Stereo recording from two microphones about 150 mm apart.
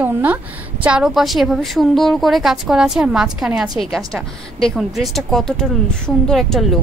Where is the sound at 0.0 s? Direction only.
10° right (ahead or behind).